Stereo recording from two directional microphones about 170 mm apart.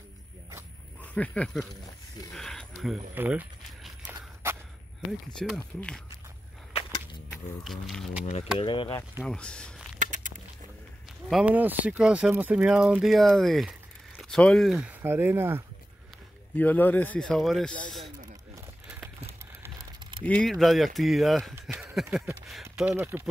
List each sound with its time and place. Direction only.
1.1 s speech: 5° left (ahead or behind)
2.3 s a sound: centre (ahead or behind)
3.2 s walk: 10° right (ahead or behind)
5.3 s speech: 5° left (ahead or behind)
7.2 s speech: centre (ahead or behind)
8.5 s speech: 30° left (ahead or behind)
9.3 s speech: 5° left (ahead or behind)
9.9 s a sound: 45° right (ahead or behind)
11.2 s speech: 5° right (ahead or behind)
16.5 s speech: 10° left (ahead or behind)
20.2 s speech: 5° left (ahead or behind)
21.5 s speech: 10° right (ahead or behind)